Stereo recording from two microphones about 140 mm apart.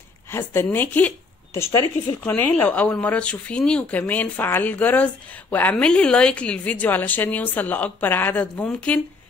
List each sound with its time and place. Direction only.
0.3 s a woman's voice: 15° left (ahead or behind)